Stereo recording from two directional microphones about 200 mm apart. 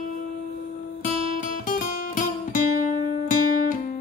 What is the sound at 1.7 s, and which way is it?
Music, 40° left (ahead or behind).